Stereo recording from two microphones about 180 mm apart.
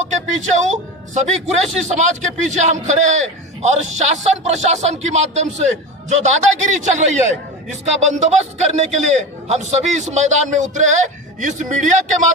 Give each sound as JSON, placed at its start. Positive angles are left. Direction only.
{"t": 0.1, "sound": "a man's voice", "side_deg": -40}